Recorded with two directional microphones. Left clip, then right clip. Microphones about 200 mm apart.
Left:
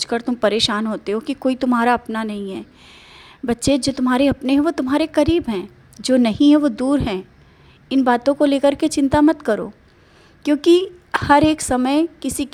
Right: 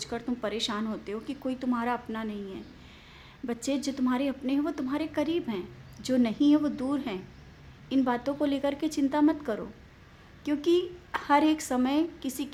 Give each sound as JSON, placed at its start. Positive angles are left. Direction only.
{"t": 0.0, "sound": "a woman's voice", "side_deg": 40}